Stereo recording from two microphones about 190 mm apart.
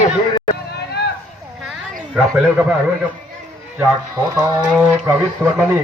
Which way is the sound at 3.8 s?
15° right (ahead or behind).